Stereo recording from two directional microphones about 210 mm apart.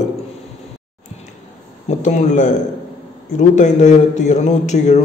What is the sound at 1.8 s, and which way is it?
A man's voice, 35° left (ahead or behind).